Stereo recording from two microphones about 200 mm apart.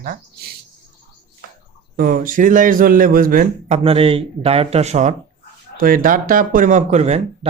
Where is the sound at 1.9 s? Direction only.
45° right (ahead or behind).